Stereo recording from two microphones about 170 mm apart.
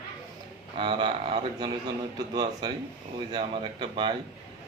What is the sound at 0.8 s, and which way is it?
Speech, 30° right (ahead or behind).